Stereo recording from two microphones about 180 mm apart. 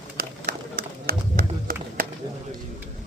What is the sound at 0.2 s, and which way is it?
Run, 60° right (ahead or behind).